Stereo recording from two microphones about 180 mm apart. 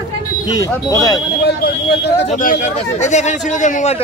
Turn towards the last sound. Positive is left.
turn(degrees=40)  # may be behind; listen again after turning